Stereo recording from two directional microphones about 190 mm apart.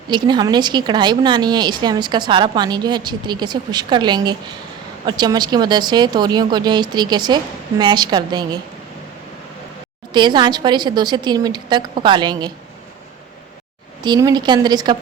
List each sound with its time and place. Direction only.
0.1 s a woman's voice: 25° right (ahead or behind)
10.1 s a woman's voice: 25° right (ahead or behind)
14.0 s a woman's voice: 20° right (ahead or behind)